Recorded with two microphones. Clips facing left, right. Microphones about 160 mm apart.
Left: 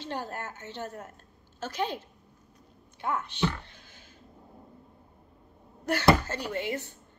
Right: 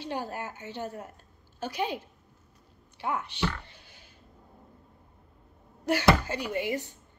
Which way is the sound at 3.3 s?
15° left (ahead or behind).